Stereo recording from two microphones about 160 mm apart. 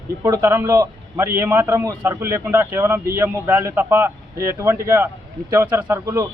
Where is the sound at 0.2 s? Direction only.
15° right (ahead or behind).